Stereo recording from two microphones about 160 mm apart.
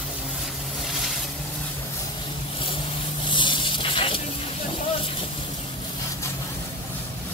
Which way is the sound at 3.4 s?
30° left (ahead or behind).